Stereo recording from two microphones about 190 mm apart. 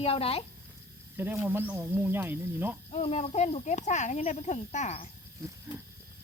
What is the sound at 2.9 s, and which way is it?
Speech, 35° left (ahead or behind).